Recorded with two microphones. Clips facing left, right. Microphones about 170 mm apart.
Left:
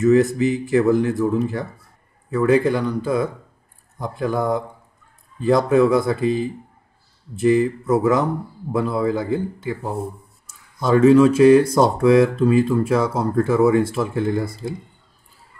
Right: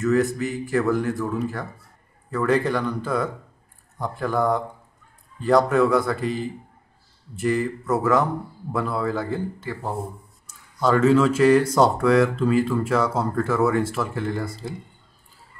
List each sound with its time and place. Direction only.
0.0 s speech: 20° left (ahead or behind)
11.0 s speech: 15° left (ahead or behind)